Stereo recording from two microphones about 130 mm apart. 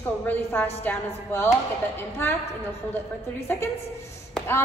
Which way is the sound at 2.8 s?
20° right (ahead or behind).